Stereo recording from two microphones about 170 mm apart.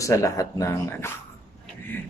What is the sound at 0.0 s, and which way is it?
Speech, 20° left (ahead or behind).